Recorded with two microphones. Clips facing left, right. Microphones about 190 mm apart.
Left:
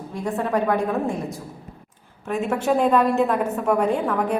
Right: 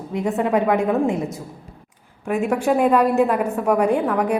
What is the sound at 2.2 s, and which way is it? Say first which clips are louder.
A woman's voice: right 3 dB; 10° right (ahead or behind).